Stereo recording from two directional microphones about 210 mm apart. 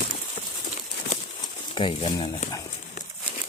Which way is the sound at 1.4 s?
20° left (ahead or behind).